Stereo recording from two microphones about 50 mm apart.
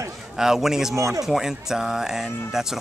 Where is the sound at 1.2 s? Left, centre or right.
Centre.